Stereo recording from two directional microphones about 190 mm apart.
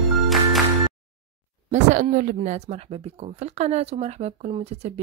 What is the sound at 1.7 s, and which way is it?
Speech, 40° right (ahead or behind).